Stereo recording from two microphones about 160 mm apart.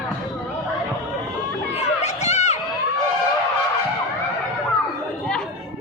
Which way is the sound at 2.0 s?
45° left (ahead or behind).